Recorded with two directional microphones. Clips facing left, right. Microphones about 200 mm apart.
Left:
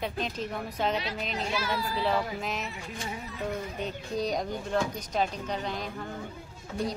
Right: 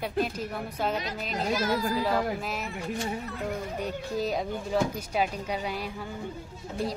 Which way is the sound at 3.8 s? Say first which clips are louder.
Right 1 dB; 5° right (ahead or behind).